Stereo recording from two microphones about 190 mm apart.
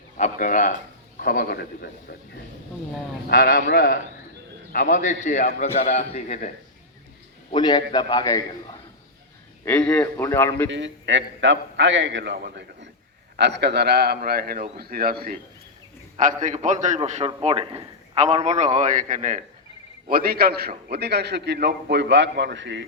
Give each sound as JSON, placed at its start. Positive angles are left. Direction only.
{"t": 0.2, "sound": "a man's voice", "side_deg": 45}
{"t": 7.5, "sound": "a man's voice", "side_deg": 25}
{"t": 9.6, "sound": "a man's voice", "side_deg": 5}
{"t": 10.7, "sound": "a man's voice", "side_deg": -70}
{"t": 20.1, "sound": "a man's voice", "side_deg": -50}